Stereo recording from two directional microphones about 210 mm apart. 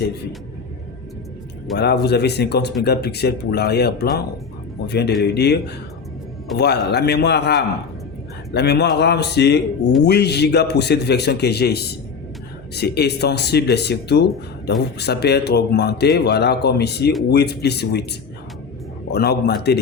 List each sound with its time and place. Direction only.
1.8 s speech: 50° left (ahead or behind)